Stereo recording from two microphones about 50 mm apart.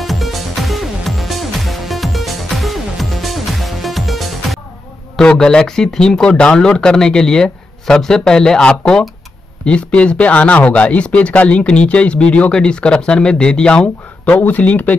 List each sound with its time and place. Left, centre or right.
0.0 s music: centre
5.2 s speech: centre
14.4 s speech: left